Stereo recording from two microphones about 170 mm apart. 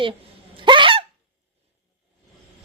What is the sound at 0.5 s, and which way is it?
Hiccup, 30° right (ahead or behind).